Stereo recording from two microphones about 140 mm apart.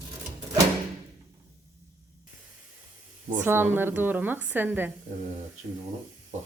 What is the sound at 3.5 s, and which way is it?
A woman's voice, 15° right (ahead or behind).